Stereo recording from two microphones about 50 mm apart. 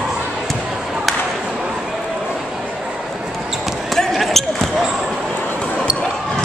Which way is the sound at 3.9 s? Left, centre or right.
Centre.